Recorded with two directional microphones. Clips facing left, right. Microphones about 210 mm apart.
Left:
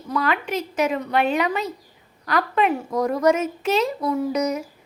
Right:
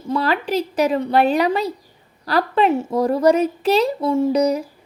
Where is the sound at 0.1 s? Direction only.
30° right (ahead or behind).